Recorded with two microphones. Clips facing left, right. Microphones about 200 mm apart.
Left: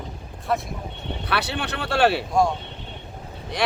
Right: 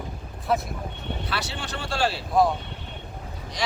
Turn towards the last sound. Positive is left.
turn(degrees=60)  # may be behind; listen again after turning